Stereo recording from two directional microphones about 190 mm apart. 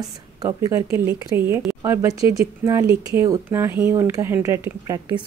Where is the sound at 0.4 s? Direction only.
20° right (ahead or behind).